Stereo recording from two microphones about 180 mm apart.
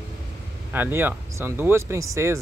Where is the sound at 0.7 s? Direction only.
10° right (ahead or behind).